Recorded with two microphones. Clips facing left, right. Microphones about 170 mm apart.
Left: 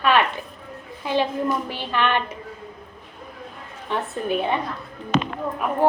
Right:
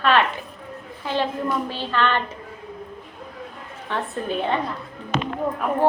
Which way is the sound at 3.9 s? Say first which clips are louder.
Left 2 dB; 15° left (ahead or behind).